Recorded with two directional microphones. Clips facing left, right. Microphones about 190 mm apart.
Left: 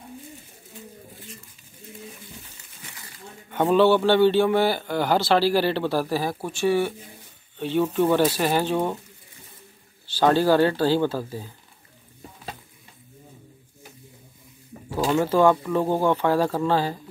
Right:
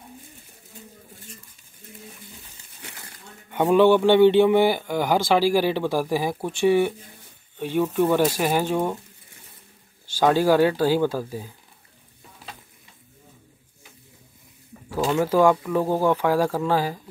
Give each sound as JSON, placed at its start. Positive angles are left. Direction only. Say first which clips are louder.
{"t": 2.8, "sound": "crumpling", "louder": "right 3 dB", "side_deg": -60}
{"t": 3.5, "sound": "a man's voice", "louder": "right 1 dB", "side_deg": -15}
{"t": 10.1, "sound": "a man's voice", "louder": "even", "side_deg": -10}
{"t": 14.7, "sound": "a sound", "louder": "left 3 dB", "side_deg": 40}
{"t": 15.0, "sound": "a man's voice", "louder": "even", "side_deg": -5}